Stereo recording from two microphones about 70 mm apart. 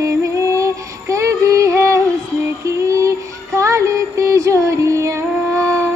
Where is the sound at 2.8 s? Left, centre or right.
Right.